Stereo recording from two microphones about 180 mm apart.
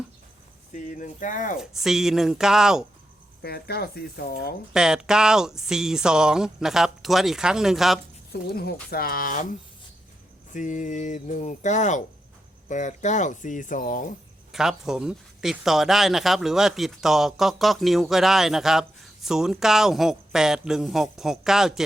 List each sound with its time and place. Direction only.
0.7 s speech: 45° left (ahead or behind)
1.5 s speech: centre (ahead or behind)
3.4 s speech: 60° left (ahead or behind)
4.7 s speech: 5° right (ahead or behind)
8.3 s speech: 60° left (ahead or behind)
10.5 s speech: 45° left (ahead or behind)
14.5 s speech: centre (ahead or behind)